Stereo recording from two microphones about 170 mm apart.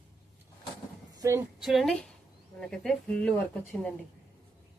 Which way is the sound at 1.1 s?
20° right (ahead or behind).